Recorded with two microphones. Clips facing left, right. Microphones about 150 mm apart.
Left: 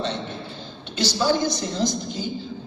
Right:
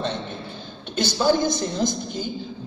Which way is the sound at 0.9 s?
50° right (ahead or behind).